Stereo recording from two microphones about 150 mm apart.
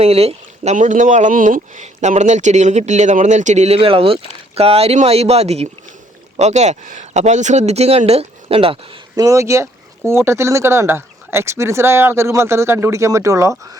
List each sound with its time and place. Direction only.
0.0 s speech: 40° right (ahead or behind)
9.1 s speech: 20° right (ahead or behind)